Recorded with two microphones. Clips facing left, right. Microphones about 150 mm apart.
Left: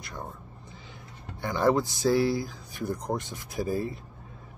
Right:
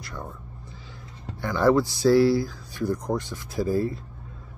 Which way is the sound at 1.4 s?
20° left (ahead or behind).